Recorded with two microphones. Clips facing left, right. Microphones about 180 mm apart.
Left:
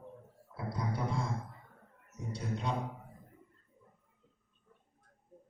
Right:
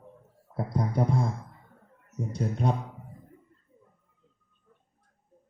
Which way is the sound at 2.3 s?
45° right (ahead or behind).